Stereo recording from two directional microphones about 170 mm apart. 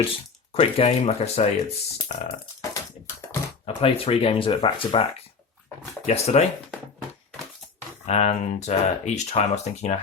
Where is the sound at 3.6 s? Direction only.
35° left (ahead or behind).